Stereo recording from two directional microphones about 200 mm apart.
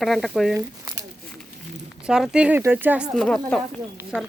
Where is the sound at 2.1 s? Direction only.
5° right (ahead or behind).